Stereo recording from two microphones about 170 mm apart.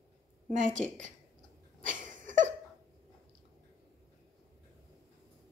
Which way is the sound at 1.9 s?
50° right (ahead or behind).